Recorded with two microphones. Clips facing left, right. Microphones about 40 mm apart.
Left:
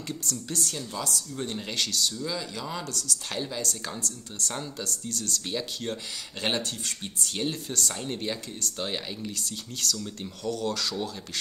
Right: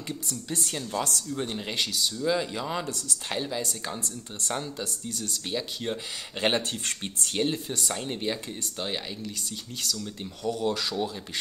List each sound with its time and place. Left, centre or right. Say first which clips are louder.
0.1 s speech: even; centre
0.9 s speech: right 5 dB; right
1.3 s speech: right 2 dB; centre
2.2 s speech: right 6 dB; right
4.0 s speech: left 1 dB; right
4.6 s speech: right 1 dB; centre
6.6 s speech: right 2 dB; right
7.3 s speech: right 3 dB; centre
10.5 s speech: right 2 dB; centre